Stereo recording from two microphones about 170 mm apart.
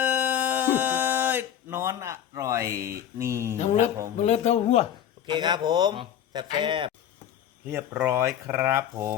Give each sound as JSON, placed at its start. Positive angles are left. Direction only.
{"t": 0.0, "sound": "a sound", "side_deg": -10}
{"t": 3.6, "sound": "mantra", "side_deg": 45}
{"t": 4.3, "sound": "speech", "side_deg": 40}
{"t": 5.2, "sound": "a man's voice", "side_deg": -25}
{"t": 7.7, "sound": "speech", "side_deg": -10}